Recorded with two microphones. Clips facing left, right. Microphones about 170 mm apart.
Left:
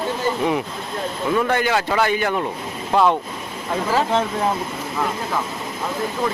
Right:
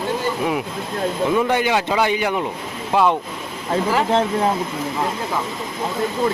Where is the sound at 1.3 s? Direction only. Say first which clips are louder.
Left 1 dB; 15° right (ahead or behind).